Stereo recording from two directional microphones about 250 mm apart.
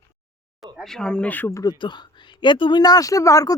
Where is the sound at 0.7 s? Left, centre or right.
Centre.